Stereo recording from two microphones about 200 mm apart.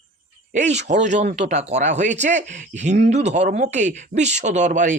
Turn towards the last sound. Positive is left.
turn(degrees=-40)  # may be behind; listen again after turning